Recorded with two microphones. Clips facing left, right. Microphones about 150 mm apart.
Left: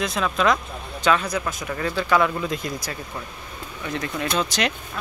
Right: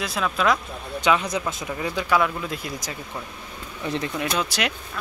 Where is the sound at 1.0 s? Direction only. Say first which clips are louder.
Left 1 dB; 15° right (ahead or behind).